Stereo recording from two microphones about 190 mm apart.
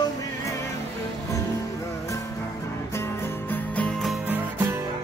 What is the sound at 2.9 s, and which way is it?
Music, 15° left (ahead or behind).